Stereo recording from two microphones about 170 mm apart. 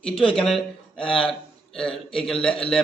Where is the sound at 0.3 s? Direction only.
5° left (ahead or behind).